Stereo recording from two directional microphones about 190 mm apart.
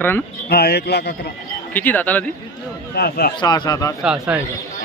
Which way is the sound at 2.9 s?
55° left (ahead or behind).